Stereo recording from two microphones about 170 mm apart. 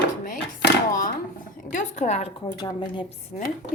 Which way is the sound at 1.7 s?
45° left (ahead or behind).